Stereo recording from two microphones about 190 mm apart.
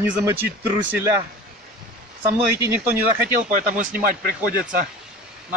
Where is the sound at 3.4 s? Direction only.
45° right (ahead or behind).